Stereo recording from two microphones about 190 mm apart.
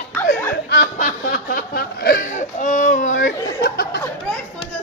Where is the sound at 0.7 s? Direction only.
50° left (ahead or behind).